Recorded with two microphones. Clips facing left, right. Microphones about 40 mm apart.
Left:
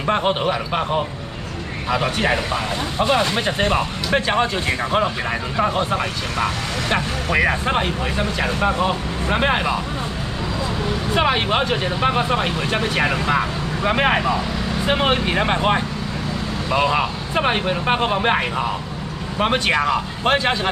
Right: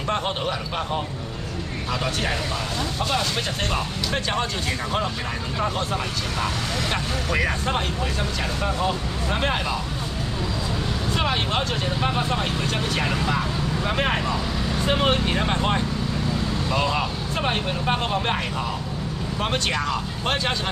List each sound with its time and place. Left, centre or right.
0.1 s speech: left
11.1 s speech: left